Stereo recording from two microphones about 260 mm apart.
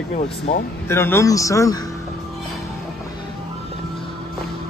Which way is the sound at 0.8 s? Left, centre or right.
Centre.